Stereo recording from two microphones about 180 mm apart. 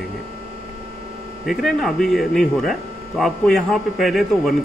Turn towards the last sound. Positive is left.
turn(degrees=0)  # may be behind; listen again after turning